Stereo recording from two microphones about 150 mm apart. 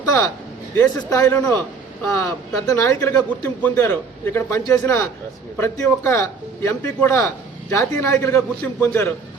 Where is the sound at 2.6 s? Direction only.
20° left (ahead or behind).